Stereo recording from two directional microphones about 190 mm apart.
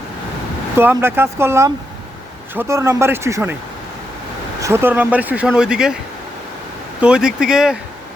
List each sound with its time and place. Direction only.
0.8 s speech: 10° right (ahead or behind)
4.6 s speech: 10° right (ahead or behind)
7.0 s speech: 5° right (ahead or behind)